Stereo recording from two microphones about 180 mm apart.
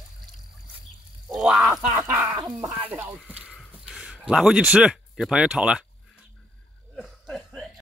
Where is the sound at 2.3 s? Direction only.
20° right (ahead or behind).